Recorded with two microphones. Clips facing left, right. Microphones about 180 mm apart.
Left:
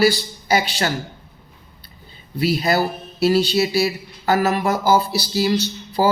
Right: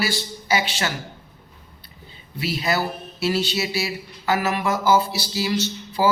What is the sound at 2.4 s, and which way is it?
Speech, 40° left (ahead or behind).